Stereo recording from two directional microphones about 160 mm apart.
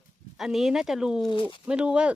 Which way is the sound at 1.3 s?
30° left (ahead or behind).